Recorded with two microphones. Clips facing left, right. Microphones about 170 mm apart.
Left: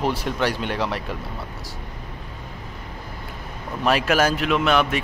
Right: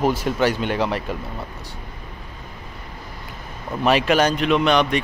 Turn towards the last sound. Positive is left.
turn(degrees=5)  # may be behind; listen again after turning